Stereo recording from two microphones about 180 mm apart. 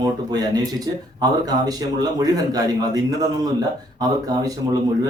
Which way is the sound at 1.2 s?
20° right (ahead or behind).